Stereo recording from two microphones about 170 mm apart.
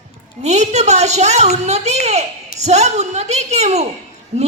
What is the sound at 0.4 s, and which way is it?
A woman's voice, 40° right (ahead or behind).